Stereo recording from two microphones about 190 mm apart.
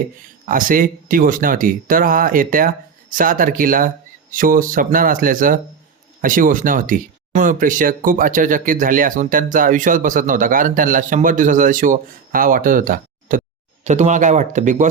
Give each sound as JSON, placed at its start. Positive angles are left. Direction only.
{"t": 0.4, "sound": "speech", "side_deg": -45}